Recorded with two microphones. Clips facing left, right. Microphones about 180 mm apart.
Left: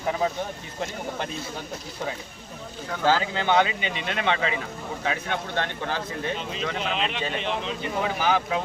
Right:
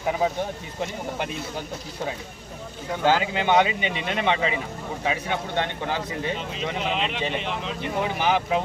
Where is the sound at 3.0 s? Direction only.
15° right (ahead or behind).